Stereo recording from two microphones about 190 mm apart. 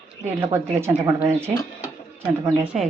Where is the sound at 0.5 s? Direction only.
10° right (ahead or behind).